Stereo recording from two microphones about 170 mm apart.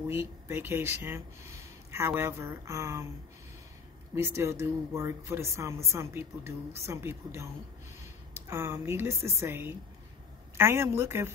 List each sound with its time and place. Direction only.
0.1 s speech: 15° right (ahead or behind)
4.1 s speech: 15° right (ahead or behind)
8.5 s speech: 15° right (ahead or behind)